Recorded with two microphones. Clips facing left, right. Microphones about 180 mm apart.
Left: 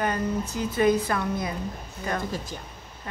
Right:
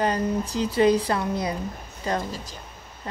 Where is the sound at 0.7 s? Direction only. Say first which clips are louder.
Right 2 dB; 30° right (ahead or behind).